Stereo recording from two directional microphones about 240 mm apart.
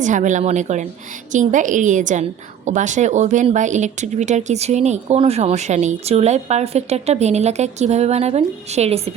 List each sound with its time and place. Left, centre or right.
0.0 s a woman's voice: right